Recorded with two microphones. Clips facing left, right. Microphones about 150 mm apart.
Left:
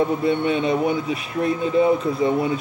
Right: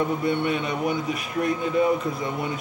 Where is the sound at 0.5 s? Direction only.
30° left (ahead or behind).